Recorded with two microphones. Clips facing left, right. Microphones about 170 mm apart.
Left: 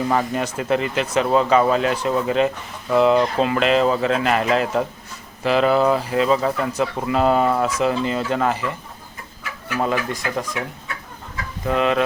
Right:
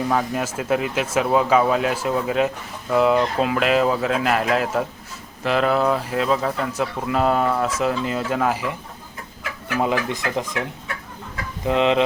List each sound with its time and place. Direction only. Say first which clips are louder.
0.1 s speech: left 1 dB; centre (ahead or behind)
10.1 s speech: even; 20° right (ahead or behind)
11.6 s speech: right 1 dB; 20° right (ahead or behind)